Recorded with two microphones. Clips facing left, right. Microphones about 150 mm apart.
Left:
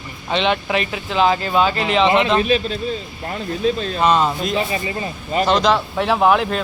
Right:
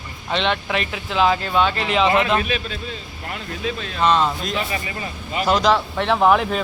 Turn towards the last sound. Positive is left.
turn(degrees=0)  # may be behind; listen again after turning